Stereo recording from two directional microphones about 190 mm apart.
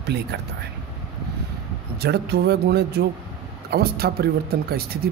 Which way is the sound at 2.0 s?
60° right (ahead or behind).